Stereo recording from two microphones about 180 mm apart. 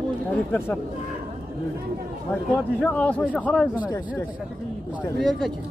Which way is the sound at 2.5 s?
5° left (ahead or behind).